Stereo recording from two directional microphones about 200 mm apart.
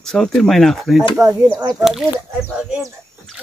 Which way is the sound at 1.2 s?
20° right (ahead or behind).